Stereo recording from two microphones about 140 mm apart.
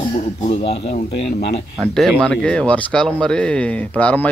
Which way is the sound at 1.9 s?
5° left (ahead or behind).